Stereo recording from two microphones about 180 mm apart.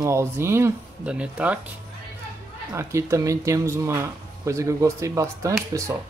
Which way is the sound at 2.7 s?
15° right (ahead or behind).